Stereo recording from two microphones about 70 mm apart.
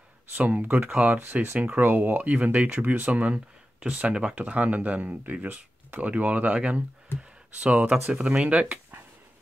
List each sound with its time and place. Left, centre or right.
0.5 s speech: right